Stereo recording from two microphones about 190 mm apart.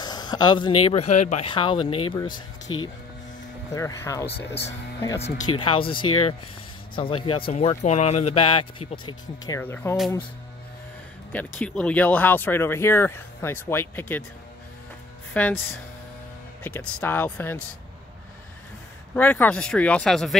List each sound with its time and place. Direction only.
0.0 s speech: 20° left (ahead or behind)
5.4 s speech: 25° left (ahead or behind)
9.6 s speech: 10° left (ahead or behind)
11.3 s speech: 5° left (ahead or behind)
15.3 s speech: 10° left (ahead or behind)
19.1 s speech: 10° left (ahead or behind)